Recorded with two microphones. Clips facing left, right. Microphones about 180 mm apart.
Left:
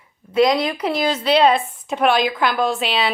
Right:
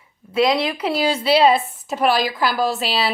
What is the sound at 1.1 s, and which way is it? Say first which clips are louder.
A woman's voice: even; 10° right (ahead or behind).